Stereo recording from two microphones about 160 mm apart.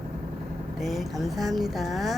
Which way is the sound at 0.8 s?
Centre (ahead or behind).